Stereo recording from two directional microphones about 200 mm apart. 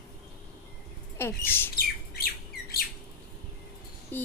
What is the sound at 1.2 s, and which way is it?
Speech, 10° left (ahead or behind).